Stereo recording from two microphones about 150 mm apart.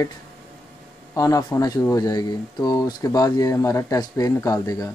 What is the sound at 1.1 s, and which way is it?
Speech, 25° left (ahead or behind).